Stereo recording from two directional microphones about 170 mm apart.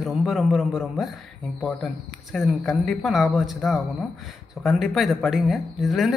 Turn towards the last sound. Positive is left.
turn(degrees=0)  # may be behind; listen again after turning